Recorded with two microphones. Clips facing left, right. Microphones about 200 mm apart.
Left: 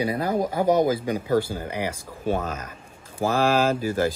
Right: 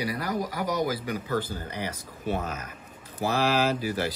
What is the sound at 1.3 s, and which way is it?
Speech, 10° left (ahead or behind).